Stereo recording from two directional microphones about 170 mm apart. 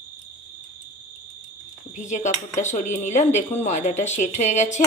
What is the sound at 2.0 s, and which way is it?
Speech, 45° left (ahead or behind).